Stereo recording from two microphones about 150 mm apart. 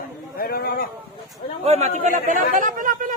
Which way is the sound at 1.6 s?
50° right (ahead or behind).